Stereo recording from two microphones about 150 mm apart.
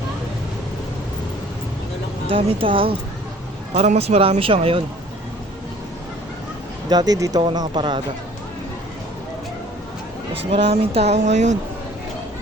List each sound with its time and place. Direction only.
2.3 s speech: 35° right (ahead or behind)
6.8 s speech: 25° right (ahead or behind)
10.3 s speech: 40° right (ahead or behind)